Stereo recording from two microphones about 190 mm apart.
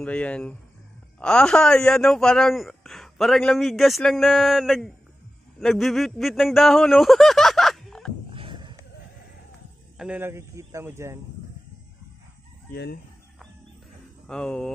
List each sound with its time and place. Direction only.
0.0 s speech: 5° left (ahead or behind)
8.3 s dog: 25° right (ahead or behind)
9.9 s speech: 10° right (ahead or behind)
12.7 s chicken: 60° left (ahead or behind)
14.2 s speech: 5° left (ahead or behind)